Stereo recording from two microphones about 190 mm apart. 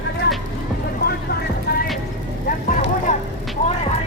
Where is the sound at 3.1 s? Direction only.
40° left (ahead or behind).